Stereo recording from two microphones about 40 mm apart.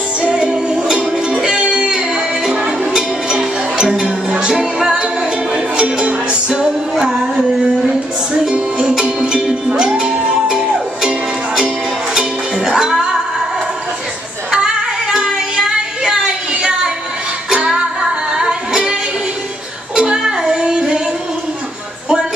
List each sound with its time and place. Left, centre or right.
0.2 s music: right
1.6 s music: right
6.6 s music: centre
8.5 s music: right
14.5 s music: centre
20.0 s child singing: centre